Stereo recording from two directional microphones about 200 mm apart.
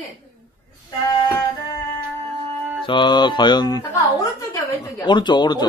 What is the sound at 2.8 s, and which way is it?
A woman's voice, 25° left (ahead or behind).